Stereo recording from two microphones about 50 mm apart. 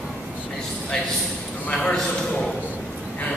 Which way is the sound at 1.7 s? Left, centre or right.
Centre.